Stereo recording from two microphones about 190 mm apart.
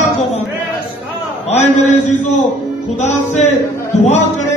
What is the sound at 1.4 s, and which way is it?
Speech, 40° left (ahead or behind).